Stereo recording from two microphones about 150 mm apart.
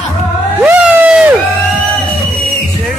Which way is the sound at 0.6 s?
10° right (ahead or behind).